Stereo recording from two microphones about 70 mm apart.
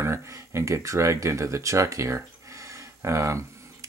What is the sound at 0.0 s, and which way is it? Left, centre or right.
Speech, right.